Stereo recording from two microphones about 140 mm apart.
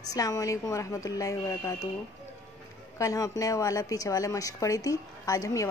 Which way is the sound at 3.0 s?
25° left (ahead or behind).